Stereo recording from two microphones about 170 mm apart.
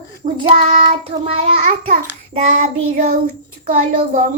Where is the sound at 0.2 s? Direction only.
45° right (ahead or behind).